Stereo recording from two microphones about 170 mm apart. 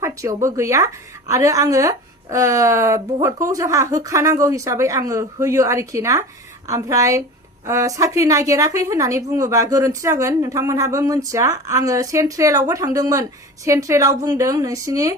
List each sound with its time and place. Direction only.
0.0 s a woman's voice: 20° right (ahead or behind)